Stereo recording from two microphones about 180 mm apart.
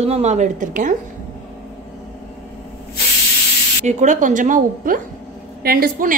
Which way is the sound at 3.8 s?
45° right (ahead or behind).